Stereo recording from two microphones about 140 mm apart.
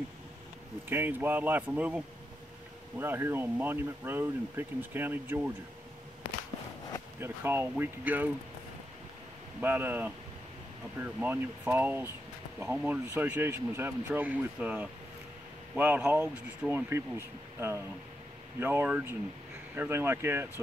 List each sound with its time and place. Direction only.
0.8 s speech: 15° right (ahead or behind)
7.2 s speech: 15° right (ahead or behind)
9.6 s speech: 15° right (ahead or behind)
18.6 s speech: 15° right (ahead or behind)